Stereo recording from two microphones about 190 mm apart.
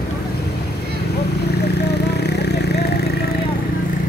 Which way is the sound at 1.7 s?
60° left (ahead or behind).